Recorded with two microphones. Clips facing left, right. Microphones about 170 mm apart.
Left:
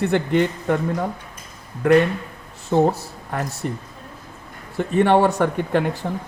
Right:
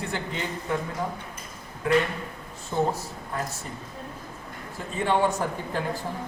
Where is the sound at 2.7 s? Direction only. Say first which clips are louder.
Left 8 dB; 65° left (ahead or behind).